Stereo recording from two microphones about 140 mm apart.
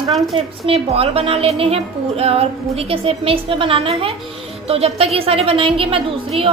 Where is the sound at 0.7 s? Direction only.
45° right (ahead or behind).